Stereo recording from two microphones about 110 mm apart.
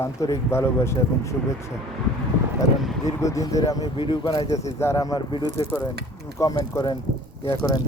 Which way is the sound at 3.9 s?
45° left (ahead or behind).